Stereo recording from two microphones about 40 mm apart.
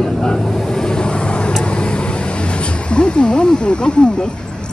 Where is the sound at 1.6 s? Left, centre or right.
Left.